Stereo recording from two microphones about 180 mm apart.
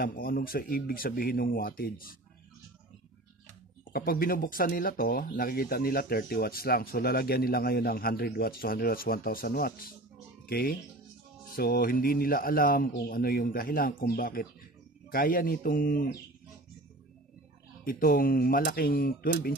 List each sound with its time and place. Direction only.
0.0 s speech: 55° left (ahead or behind)
3.9 s speech: 55° left (ahead or behind)
17.8 s speech: 55° left (ahead or behind)